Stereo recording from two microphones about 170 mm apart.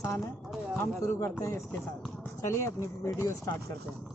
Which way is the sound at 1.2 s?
15° left (ahead or behind).